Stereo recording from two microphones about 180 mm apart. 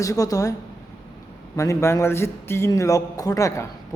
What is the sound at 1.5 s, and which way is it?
A man's voice, 15° left (ahead or behind).